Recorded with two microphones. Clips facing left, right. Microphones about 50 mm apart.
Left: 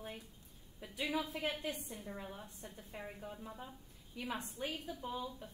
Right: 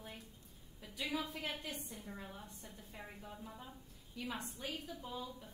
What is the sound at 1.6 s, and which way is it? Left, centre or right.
A woman's voice, centre.